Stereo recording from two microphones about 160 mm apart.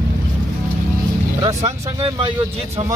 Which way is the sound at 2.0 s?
30° right (ahead or behind).